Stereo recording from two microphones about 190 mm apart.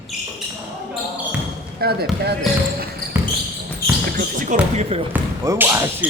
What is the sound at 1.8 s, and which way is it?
Speech, 55° right (ahead or behind).